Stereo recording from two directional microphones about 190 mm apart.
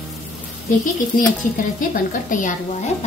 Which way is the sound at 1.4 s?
45° left (ahead or behind).